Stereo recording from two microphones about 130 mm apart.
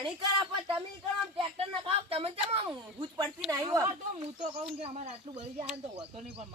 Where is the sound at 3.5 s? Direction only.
30° right (ahead or behind).